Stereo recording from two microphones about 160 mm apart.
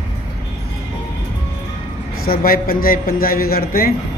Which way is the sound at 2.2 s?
65° left (ahead or behind).